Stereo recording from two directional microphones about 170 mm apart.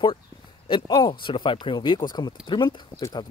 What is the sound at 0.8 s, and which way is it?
Speech, 20° left (ahead or behind).